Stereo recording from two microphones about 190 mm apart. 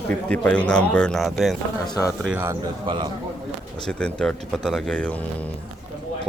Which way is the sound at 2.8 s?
25° right (ahead or behind).